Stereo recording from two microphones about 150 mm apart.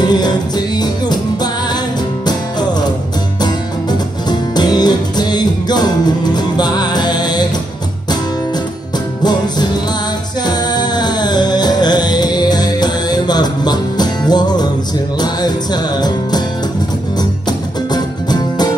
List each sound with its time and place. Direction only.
0.0 s music: 25° left (ahead or behind)
4.3 s music: 25° left (ahead or behind)
9.2 s music: 30° left (ahead or behind)